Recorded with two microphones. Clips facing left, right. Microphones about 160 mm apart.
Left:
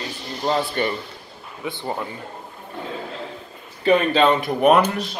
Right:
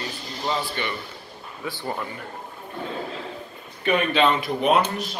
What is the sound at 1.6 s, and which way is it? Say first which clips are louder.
Speech: left 2 dB; 20° left (ahead or behind).